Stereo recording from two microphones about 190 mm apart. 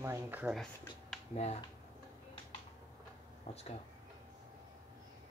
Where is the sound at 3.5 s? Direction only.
35° left (ahead or behind).